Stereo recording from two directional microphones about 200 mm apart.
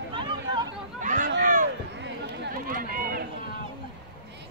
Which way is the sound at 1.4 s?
40° right (ahead or behind).